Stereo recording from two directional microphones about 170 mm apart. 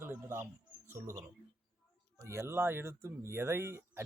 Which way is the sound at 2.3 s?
15° right (ahead or behind).